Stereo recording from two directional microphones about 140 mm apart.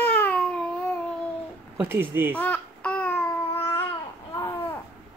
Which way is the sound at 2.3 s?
10° left (ahead or behind).